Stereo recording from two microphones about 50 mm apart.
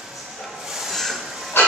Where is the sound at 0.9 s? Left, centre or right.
Centre.